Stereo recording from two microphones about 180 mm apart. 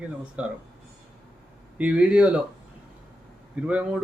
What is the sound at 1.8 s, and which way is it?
Speech, 5° right (ahead or behind).